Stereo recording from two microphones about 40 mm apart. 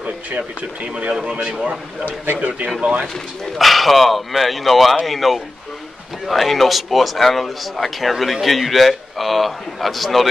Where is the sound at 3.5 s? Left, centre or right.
Centre.